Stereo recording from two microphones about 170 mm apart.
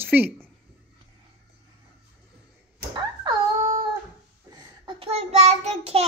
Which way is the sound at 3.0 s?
25° right (ahead or behind).